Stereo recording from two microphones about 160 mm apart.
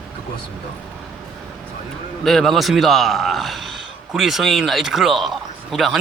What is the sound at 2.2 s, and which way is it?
A man's voice, centre (ahead or behind).